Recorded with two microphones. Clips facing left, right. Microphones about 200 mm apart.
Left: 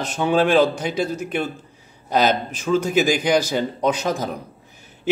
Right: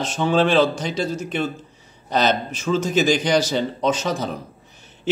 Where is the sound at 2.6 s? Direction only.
10° left (ahead or behind).